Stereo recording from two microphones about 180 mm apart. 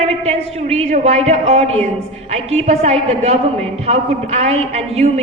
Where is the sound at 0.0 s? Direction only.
35° right (ahead or behind).